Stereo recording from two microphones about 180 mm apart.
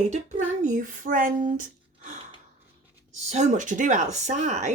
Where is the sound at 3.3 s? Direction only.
40° right (ahead or behind).